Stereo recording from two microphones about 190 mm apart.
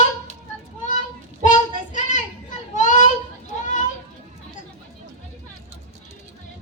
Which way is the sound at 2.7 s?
40° left (ahead or behind).